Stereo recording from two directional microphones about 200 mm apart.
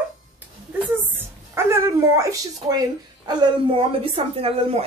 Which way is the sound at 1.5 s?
15° right (ahead or behind).